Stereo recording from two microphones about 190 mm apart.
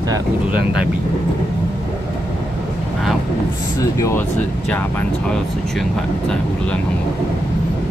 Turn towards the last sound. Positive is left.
turn(degrees=5)  # may be behind; listen again after turning